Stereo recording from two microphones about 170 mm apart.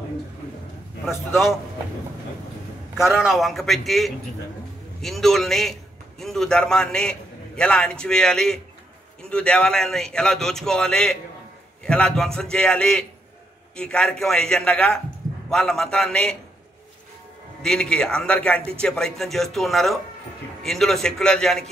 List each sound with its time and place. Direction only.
1.0 s speech: centre (ahead or behind)
3.0 s a man's voice: 5° right (ahead or behind)
17.6 s speech: 5° left (ahead or behind)